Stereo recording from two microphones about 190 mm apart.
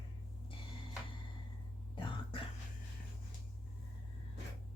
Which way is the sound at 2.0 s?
25° left (ahead or behind).